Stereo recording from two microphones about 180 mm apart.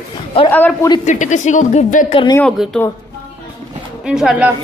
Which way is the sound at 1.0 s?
45° left (ahead or behind).